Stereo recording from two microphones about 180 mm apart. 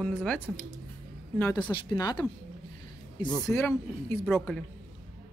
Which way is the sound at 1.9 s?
20° left (ahead or behind).